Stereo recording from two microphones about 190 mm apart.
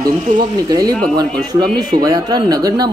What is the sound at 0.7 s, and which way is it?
Speech, 20° right (ahead or behind).